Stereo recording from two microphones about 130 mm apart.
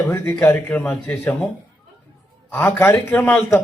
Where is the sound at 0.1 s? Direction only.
20° left (ahead or behind).